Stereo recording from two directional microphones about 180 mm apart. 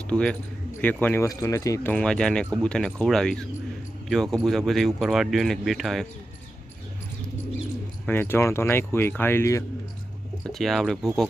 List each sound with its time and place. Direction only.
0.1 s speech: 5° left (ahead or behind)
1.9 s speech: 5° left (ahead or behind)
8.0 s speech: 10° left (ahead or behind)
10.4 s speech: centre (ahead or behind)